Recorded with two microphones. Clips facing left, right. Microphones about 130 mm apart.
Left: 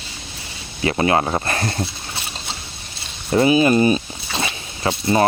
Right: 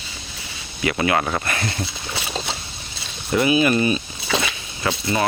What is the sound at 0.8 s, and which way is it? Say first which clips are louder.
Speech: left 3 dB; 30° left (ahead or behind).